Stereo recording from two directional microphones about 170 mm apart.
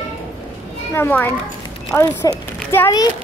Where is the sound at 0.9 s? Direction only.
10° left (ahead or behind).